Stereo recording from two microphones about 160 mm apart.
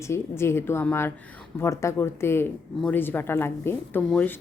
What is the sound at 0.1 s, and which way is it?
A woman's voice, 15° left (ahead or behind).